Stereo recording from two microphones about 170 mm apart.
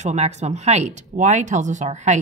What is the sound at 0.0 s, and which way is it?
Speech, 40° right (ahead or behind).